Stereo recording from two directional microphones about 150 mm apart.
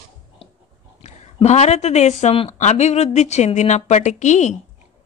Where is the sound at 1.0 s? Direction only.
50° left (ahead or behind).